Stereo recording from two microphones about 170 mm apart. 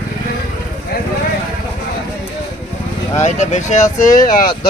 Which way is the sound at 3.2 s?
45° left (ahead or behind).